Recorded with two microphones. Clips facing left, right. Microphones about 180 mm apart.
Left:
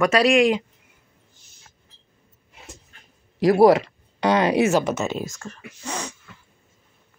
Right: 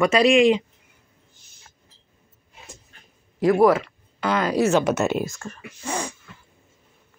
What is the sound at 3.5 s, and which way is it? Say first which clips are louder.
Speech: left 2 dB; 35° left (ahead or behind).